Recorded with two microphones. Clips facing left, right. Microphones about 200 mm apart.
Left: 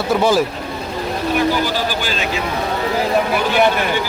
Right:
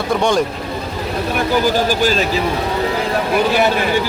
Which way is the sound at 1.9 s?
40° right (ahead or behind).